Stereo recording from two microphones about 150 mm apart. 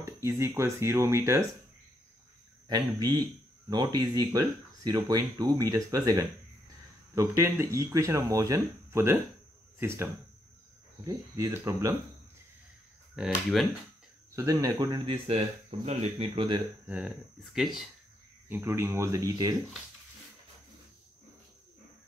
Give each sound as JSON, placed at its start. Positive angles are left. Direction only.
{"t": 0.0, "sound": "speech", "side_deg": -20}
{"t": 2.7, "sound": "speech", "side_deg": -25}
{"t": 11.1, "sound": "speech", "side_deg": -20}
{"t": 13.1, "sound": "speech", "side_deg": 0}
{"t": 14.3, "sound": "speech", "side_deg": -20}
{"t": 15.2, "sound": "speech", "side_deg": -45}
{"t": 16.8, "sound": "speech", "side_deg": -10}
{"t": 18.5, "sound": "speech", "side_deg": -15}